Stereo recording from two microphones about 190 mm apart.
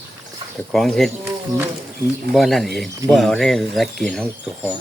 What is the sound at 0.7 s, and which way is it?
Speech, centre (ahead or behind).